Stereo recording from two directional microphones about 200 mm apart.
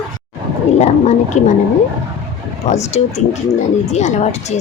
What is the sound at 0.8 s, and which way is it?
Speech, 35° left (ahead or behind).